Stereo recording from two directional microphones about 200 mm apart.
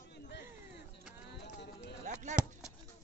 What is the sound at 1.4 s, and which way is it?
Clip-clop, 60° left (ahead or behind).